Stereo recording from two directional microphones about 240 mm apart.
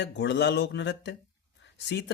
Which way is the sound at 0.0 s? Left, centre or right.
Left.